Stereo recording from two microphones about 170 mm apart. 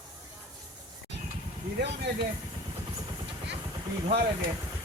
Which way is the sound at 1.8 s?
80° right.